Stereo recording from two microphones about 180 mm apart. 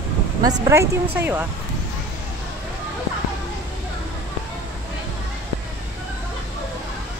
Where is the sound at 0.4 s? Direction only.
20° right (ahead or behind).